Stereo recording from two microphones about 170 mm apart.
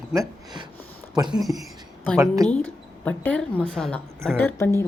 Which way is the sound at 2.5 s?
10° left (ahead or behind).